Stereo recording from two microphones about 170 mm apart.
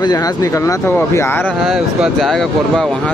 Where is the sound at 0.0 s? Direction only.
20° left (ahead or behind).